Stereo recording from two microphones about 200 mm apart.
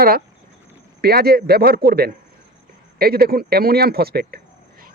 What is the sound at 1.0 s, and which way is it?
Speech, 50° right (ahead or behind).